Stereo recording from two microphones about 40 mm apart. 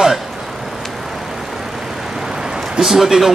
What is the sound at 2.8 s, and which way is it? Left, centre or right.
Speech, centre.